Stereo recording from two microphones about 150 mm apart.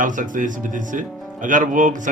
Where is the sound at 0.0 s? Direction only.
60° right (ahead or behind).